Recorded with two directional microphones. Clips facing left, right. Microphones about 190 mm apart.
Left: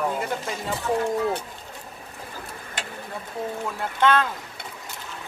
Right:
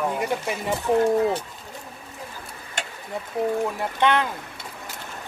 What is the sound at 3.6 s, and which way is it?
Speech, 20° right (ahead or behind).